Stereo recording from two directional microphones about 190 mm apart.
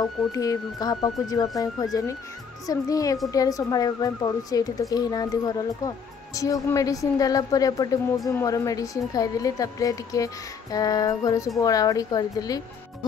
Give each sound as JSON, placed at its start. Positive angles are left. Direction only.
{"t": 0.0, "sound": "a woman's voice", "side_deg": 20}